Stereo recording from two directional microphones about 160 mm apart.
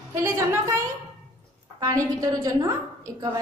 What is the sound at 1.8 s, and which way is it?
A woman's voice, 20° right (ahead or behind).